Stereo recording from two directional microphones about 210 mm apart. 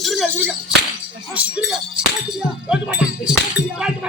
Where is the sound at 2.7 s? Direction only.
5° right (ahead or behind).